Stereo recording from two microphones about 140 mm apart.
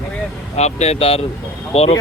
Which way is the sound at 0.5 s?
50° left (ahead or behind).